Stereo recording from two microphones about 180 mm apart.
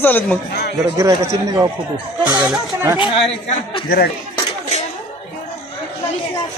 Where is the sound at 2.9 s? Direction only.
25° left (ahead or behind).